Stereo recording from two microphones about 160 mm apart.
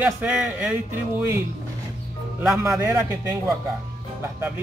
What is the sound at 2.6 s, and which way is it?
Speech, 20° right (ahead or behind).